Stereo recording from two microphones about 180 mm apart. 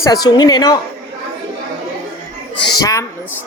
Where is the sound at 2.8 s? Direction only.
20° left (ahead or behind).